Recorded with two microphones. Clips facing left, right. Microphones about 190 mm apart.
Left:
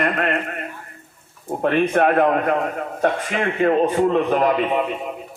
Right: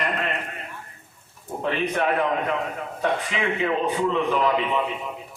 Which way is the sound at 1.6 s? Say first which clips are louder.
Left 7 dB; 55° left (ahead or behind).